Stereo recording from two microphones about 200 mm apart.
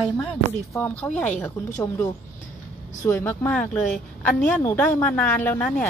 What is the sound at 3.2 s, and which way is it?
A woman's voice, 10° left (ahead or behind).